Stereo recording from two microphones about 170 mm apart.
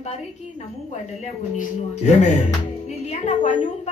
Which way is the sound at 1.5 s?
45° left (ahead or behind).